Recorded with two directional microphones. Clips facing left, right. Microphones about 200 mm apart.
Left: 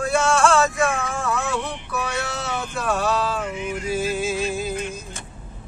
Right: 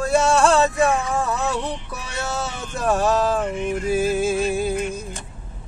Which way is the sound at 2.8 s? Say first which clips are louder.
Right 4 dB; 45° right (ahead or behind).